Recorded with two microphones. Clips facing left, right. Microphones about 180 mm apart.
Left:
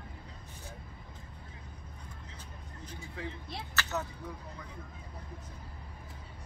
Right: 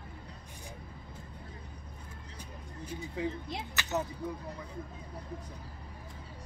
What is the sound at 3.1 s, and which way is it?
Speech, 15° right (ahead or behind).